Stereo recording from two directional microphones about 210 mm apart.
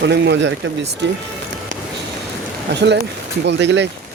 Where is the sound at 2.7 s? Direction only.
55° right (ahead or behind).